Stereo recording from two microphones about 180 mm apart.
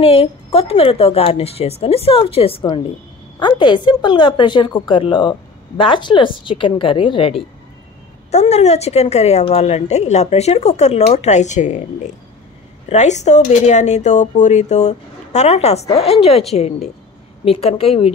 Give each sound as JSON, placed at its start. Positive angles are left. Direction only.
{"t": 0.0, "sound": "a woman's voice", "side_deg": 30}
{"t": 12.9, "sound": "a woman's voice", "side_deg": 40}